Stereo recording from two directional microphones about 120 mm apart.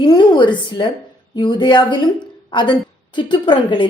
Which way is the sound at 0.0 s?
40° left (ahead or behind).